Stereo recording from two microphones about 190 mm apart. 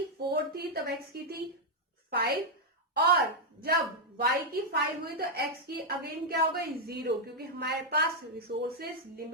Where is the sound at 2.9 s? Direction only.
55° right (ahead or behind).